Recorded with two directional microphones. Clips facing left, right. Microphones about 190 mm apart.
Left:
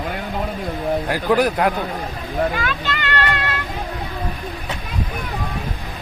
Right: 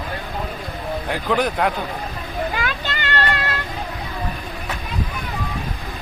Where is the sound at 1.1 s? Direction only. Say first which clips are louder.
Left 2 dB; 10° left (ahead or behind).